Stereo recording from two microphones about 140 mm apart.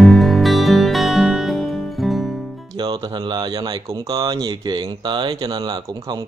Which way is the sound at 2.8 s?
30° right (ahead or behind).